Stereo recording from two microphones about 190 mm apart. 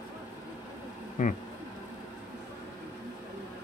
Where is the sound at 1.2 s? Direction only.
40° left (ahead or behind).